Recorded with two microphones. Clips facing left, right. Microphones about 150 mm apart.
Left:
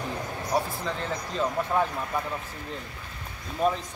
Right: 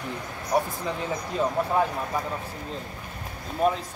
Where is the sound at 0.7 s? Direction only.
10° right (ahead or behind).